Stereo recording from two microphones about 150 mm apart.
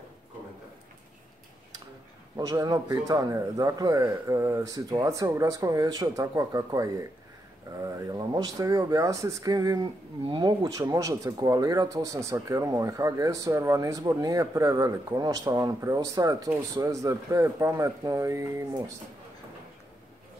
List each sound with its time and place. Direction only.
2.3 s speech: 25° right (ahead or behind)